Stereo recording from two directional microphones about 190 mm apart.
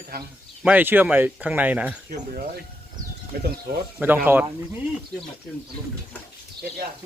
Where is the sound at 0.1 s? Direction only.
55° right (ahead or behind).